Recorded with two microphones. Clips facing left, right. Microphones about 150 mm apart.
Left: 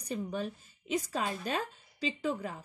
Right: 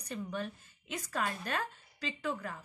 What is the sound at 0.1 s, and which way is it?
A woman's voice, 15° left (ahead or behind).